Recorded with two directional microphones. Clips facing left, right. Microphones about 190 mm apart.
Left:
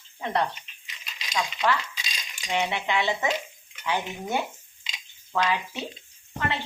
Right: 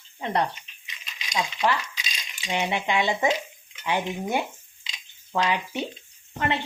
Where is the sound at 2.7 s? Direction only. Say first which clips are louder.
Right 2 dB; 15° right (ahead or behind).